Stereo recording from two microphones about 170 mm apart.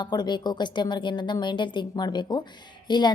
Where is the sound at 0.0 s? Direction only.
25° left (ahead or behind).